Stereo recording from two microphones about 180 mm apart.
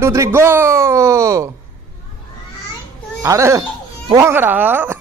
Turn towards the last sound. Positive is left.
turn(degrees=-10)  # may be behind; listen again after turning